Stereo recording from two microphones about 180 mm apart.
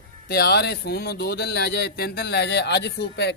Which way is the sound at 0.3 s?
65° left (ahead or behind).